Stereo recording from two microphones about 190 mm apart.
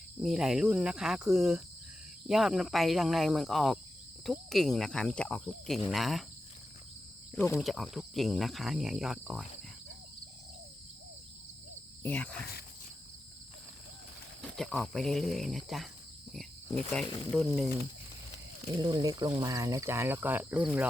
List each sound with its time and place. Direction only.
0.2 s cricket: centre (ahead or behind)
7.3 s speech: 15° left (ahead or behind)
7.6 s cricket: centre (ahead or behind)
12.0 s speech: 10° left (ahead or behind)
14.5 s cricket: centre (ahead or behind)
18.8 s speech: 20° right (ahead or behind)